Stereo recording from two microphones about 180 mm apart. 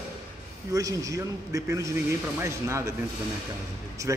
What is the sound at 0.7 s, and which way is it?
A man's voice, 20° right (ahead or behind).